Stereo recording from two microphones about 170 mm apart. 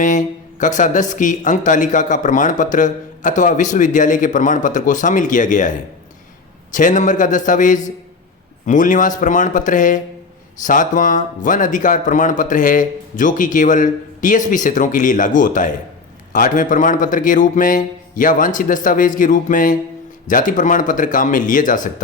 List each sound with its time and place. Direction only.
0.0 s speech: 50° left (ahead or behind)